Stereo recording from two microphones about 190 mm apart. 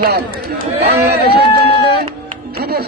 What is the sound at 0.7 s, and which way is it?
Speech, 60° right (ahead or behind).